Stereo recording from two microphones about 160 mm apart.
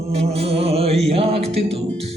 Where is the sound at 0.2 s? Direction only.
40° right (ahead or behind).